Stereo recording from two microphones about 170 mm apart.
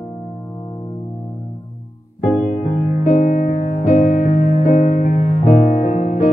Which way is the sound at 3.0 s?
45° left (ahead or behind).